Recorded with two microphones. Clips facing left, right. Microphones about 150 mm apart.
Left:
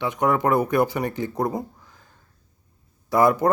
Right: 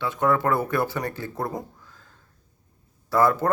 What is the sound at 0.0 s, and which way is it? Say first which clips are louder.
Speech: left 1 dB; 15° left (ahead or behind).